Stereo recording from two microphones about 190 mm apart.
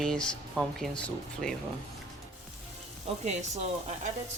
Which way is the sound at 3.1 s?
35° right (ahead or behind).